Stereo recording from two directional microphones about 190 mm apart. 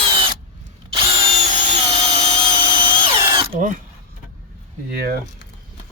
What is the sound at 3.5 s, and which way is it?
Speech, 40° right (ahead or behind).